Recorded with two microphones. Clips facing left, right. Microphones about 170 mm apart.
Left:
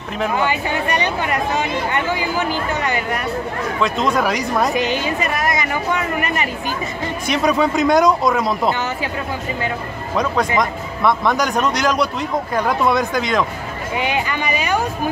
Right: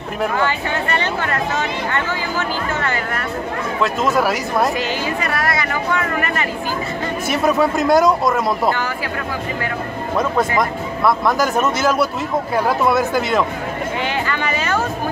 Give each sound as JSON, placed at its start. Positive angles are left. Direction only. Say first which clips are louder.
{"t": 0.4, "sound": "speech", "louder": "even", "side_deg": 15}
{"t": 3.8, "sound": "speech", "louder": "right 1 dB", "side_deg": -5}
{"t": 4.7, "sound": "speech", "louder": "left 2 dB", "side_deg": 20}
{"t": 7.2, "sound": "speech", "louder": "even", "side_deg": -5}
{"t": 10.6, "sound": "speech", "louder": "right 1 dB", "side_deg": 0}
{"t": 13.9, "sound": "speech", "louder": "left 4 dB", "side_deg": 15}